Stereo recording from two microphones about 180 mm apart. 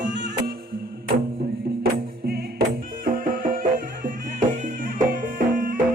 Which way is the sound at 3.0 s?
50° right (ahead or behind).